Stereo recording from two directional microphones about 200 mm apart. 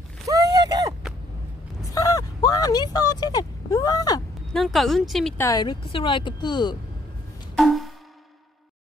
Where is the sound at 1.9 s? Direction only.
15° left (ahead or behind).